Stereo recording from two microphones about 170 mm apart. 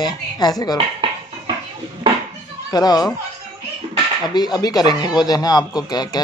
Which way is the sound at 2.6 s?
20° left (ahead or behind).